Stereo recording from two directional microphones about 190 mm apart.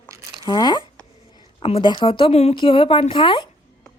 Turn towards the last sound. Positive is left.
turn(degrees=25)  # may be behind; listen again after turning